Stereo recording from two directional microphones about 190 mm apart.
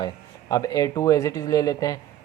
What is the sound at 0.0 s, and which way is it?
Speech, 20° left (ahead or behind).